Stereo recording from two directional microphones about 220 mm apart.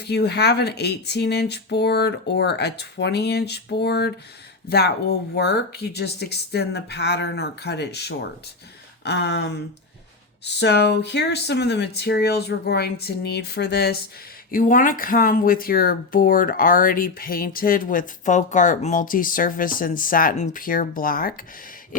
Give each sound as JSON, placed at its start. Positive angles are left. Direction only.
{"t": 0.0, "sound": "speech", "side_deg": 50}